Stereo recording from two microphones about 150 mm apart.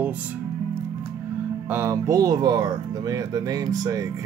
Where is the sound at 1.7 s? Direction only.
20° right (ahead or behind).